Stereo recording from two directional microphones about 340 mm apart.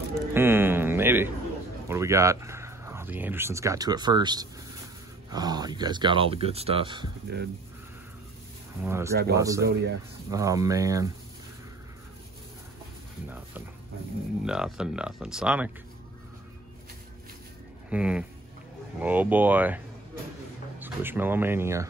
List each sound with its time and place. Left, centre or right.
0.1 s a sound: centre
1.9 s speech: centre
7.3 s speech: right
8.8 s speech: centre
9.6 s speech: right
10.3 s speech: centre
14.4 s speech: centre
17.8 s speech: centre
20.8 s speech: centre